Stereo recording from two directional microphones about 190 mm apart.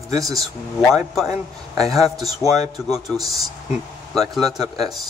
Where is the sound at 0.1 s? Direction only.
20° right (ahead or behind).